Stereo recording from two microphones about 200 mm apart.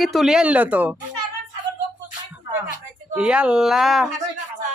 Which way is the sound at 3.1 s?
5° right (ahead or behind).